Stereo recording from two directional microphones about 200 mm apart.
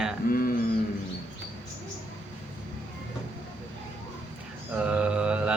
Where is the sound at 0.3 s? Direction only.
45° left (ahead or behind).